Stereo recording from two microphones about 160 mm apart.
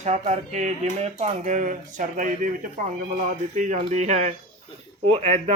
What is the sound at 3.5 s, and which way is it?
Speech, 50° right (ahead or behind).